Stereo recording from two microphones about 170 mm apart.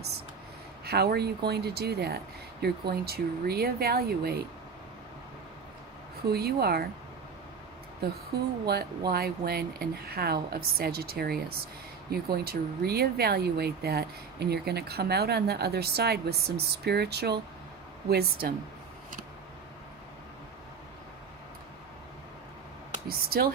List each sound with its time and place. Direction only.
0.9 s speech: 70° right (ahead or behind)
6.2 s speech: 70° right (ahead or behind)
8.6 s speech: 65° right (ahead or behind)
23.0 s speech: 60° right (ahead or behind)